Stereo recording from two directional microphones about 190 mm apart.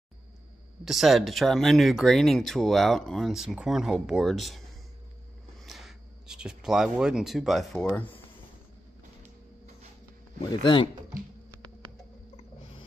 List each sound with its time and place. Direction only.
0.8 s speech: centre (ahead or behind)
5.7 s speech: centre (ahead or behind)
10.4 s speech: 25° left (ahead or behind)